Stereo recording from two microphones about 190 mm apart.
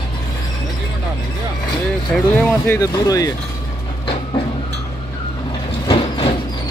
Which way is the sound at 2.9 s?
20° left (ahead or behind).